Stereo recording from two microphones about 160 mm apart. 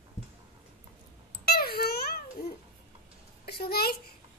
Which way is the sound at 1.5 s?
75° left (ahead or behind).